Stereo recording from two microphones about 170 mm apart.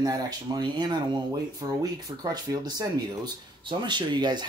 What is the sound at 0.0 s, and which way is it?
Speech, 25° right (ahead or behind).